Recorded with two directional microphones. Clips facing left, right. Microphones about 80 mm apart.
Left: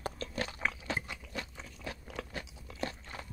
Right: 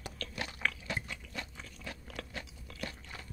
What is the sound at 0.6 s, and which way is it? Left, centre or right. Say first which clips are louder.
Crunch: right 3 dB; left.